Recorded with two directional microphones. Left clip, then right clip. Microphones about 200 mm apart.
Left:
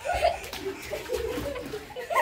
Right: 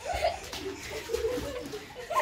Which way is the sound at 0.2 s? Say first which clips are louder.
Left 5 dB; centre (ahead or behind).